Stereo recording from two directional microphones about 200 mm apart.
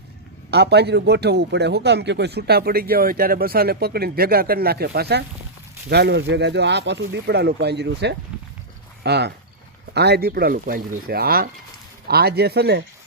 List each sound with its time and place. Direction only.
0.5 s speech: 55° right (ahead or behind)